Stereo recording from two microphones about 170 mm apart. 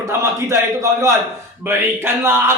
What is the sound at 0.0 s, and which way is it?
A man's voice, 15° right (ahead or behind).